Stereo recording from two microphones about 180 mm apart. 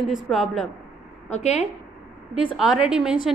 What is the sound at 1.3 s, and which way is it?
Speech, 40° left (ahead or behind).